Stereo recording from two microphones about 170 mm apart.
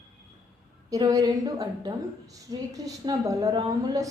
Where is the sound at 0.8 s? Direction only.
20° right (ahead or behind).